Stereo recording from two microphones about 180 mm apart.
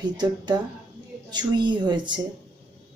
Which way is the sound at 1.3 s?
25° right (ahead or behind).